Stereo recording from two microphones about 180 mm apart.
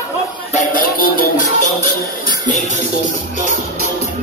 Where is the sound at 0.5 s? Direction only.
50° left (ahead or behind).